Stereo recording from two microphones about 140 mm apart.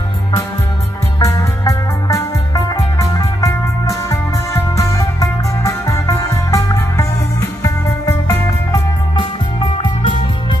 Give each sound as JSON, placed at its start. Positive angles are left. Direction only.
{"t": 1.2, "sound": "music", "side_deg": 25}